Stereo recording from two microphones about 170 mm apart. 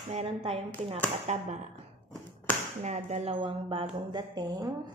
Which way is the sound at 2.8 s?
40° right (ahead or behind).